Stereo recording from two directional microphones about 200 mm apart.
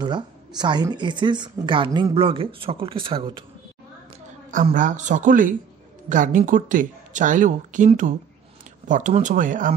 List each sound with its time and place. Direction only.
0.0 s speech: 20° right (ahead or behind)
4.7 s speech: 40° right (ahead or behind)